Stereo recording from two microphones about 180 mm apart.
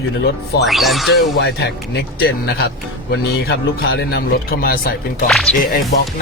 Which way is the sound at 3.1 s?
65° left (ahead or behind).